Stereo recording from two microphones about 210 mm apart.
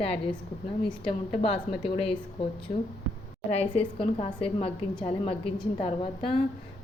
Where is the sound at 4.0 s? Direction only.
25° left (ahead or behind).